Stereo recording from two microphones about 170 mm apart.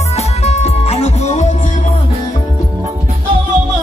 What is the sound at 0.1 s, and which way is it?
Music, 40° left (ahead or behind).